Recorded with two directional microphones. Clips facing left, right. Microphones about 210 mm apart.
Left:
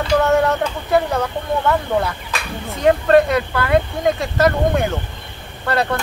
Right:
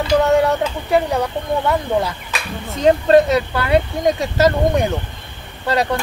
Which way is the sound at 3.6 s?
20° right (ahead or behind).